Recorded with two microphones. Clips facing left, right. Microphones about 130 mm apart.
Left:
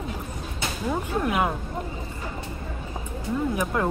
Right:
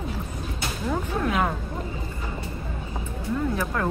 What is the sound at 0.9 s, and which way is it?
Speech, 10° left (ahead or behind).